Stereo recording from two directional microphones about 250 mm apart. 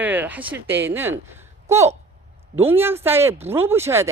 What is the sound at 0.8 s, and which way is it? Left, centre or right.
Speech, centre.